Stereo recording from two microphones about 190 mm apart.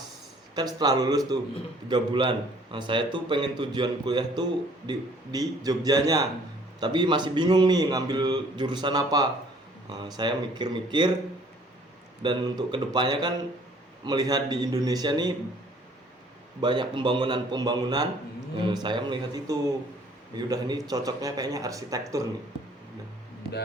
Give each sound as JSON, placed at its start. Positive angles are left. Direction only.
{"t": 0.5, "sound": "a man's voice", "side_deg": -20}
{"t": 12.2, "sound": "a man's voice", "side_deg": -25}
{"t": 16.6, "sound": "a man's voice", "side_deg": -25}